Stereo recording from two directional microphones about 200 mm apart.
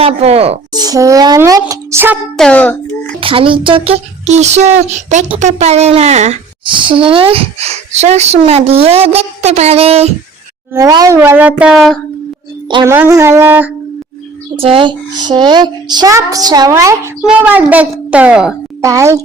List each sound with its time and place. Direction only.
0.0 s speech: 30° right (ahead or behind)
0.7 s speech: 20° right (ahead or behind)
2.4 s a child's voice: 5° left (ahead or behind)
3.2 s speech: 25° right (ahead or behind)
10.8 s a child's voice: 15° right (ahead or behind); by 11.9 s centre (ahead or behind)
12.7 s a child's voice: 15° right (ahead or behind)
14.5 s a child's voice: 25° right (ahead or behind); by 18.5 s 5° right (ahead or behind)
18.8 s a child's voice: 15° right (ahead or behind)